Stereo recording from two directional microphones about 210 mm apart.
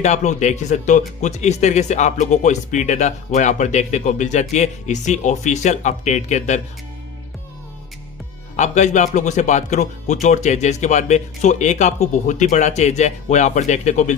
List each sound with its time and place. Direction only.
0.0 s speech: 35° left (ahead or behind)
8.5 s speech: 35° left (ahead or behind)